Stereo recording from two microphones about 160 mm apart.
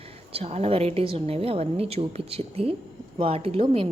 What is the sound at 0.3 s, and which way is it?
A woman's voice, 40° right (ahead or behind).